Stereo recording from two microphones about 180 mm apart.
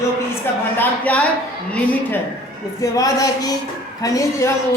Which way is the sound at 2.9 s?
20° left (ahead or behind).